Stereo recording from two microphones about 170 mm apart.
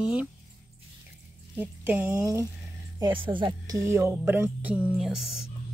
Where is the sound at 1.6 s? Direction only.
10° right (ahead or behind).